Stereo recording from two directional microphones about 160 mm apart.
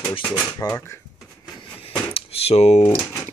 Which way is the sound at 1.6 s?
35° left (ahead or behind).